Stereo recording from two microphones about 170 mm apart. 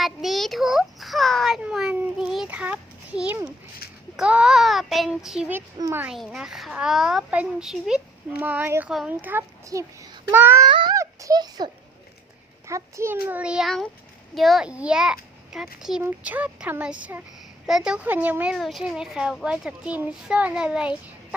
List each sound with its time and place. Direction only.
0.0 s a child's voice: centre (ahead or behind)
10.7 s a child's voice: 25° right (ahead or behind); by 20.9 s 5° right (ahead or behind)